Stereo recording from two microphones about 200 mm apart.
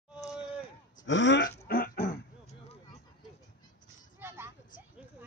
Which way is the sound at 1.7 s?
50° left (ahead or behind).